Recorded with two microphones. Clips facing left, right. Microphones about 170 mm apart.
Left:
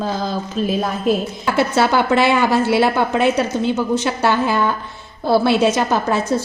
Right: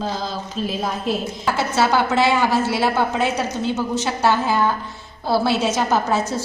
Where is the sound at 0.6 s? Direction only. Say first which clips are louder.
Left 5 dB; 50° left (ahead or behind).